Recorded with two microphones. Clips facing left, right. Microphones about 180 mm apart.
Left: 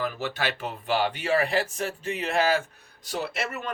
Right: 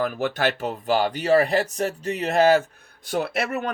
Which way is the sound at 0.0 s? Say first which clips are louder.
Right 6 dB; 50° right (ahead or behind).